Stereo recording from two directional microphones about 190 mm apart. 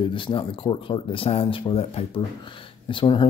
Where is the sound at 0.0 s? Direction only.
25° left (ahead or behind).